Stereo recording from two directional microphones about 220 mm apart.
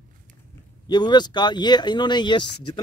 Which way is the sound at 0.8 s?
20° left (ahead or behind).